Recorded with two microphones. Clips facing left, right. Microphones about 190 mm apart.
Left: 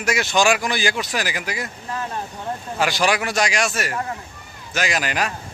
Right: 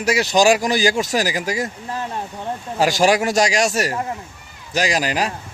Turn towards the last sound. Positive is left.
turn(degrees=-30)  # may be behind; listen again after turning